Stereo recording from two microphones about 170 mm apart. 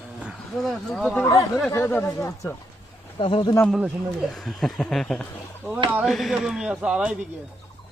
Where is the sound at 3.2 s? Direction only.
30° left (ahead or behind).